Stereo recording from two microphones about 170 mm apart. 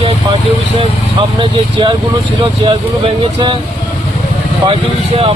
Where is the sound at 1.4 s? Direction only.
30° right (ahead or behind).